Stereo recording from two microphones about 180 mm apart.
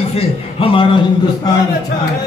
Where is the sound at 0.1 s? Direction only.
30° left (ahead or behind).